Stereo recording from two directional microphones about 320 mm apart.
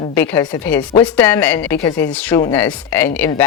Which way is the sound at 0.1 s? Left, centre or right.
Centre.